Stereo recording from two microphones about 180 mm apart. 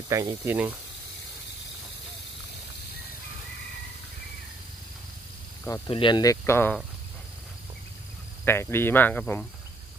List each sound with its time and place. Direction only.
0.1 s speech: 20° right (ahead or behind)
5.9 s speech: 30° left (ahead or behind)
8.5 s speech: 15° left (ahead or behind)